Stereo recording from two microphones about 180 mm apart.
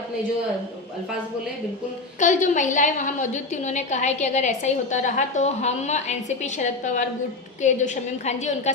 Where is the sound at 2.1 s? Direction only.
45° left (ahead or behind).